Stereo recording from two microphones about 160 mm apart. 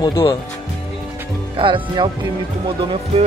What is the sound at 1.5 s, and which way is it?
Speech, 30° right (ahead or behind).